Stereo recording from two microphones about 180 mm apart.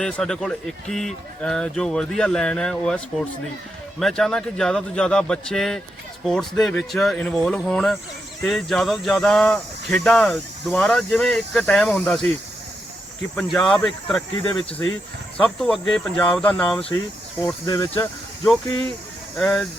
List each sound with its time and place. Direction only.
0.0 s speech: 5° left (ahead or behind)
13.3 s speech: centre (ahead or behind)
15.4 s speech: 5° left (ahead or behind)
17.4 s speech: 20° left (ahead or behind)
19.4 s speech: 5° left (ahead or behind)